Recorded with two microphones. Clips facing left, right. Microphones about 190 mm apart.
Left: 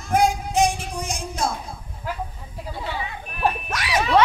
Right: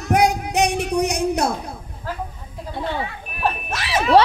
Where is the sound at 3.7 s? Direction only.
25° right (ahead or behind).